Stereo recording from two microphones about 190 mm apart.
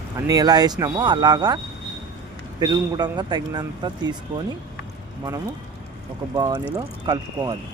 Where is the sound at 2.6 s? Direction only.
20° right (ahead or behind).